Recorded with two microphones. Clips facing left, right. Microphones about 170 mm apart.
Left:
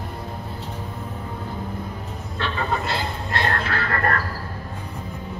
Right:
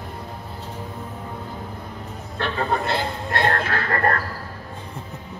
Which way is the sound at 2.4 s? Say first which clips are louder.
Right 2 dB; 55° right (ahead or behind).